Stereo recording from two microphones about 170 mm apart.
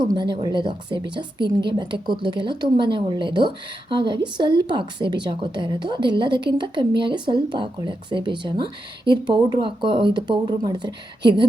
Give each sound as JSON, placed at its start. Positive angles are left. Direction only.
{"t": 0.0, "sound": "speech", "side_deg": -25}